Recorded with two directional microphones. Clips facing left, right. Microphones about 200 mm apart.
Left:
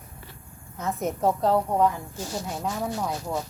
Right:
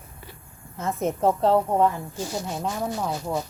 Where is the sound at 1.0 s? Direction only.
25° right (ahead or behind).